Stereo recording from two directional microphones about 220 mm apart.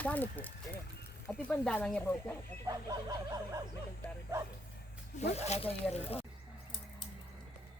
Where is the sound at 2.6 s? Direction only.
15° right (ahead or behind).